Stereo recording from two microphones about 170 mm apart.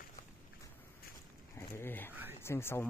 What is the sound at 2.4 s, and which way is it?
Speech, 15° left (ahead or behind).